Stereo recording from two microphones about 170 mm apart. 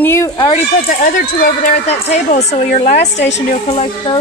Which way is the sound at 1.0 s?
50° left (ahead or behind).